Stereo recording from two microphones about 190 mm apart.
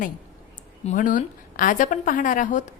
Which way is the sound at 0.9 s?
45° left (ahead or behind).